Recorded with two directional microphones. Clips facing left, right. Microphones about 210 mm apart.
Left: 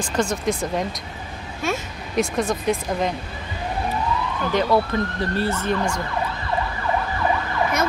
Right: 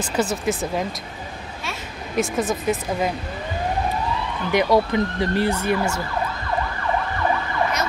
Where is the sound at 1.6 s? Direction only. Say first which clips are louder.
Left 10 dB; 45° left (ahead or behind).